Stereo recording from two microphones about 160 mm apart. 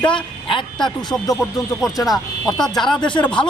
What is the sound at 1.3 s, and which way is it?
Speech, centre (ahead or behind).